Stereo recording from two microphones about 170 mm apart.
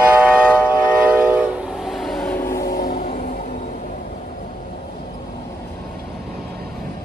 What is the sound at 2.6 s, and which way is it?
Vehicle, 55° left (ahead or behind).